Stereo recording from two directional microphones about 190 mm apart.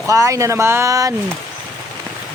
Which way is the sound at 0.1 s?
15° right (ahead or behind).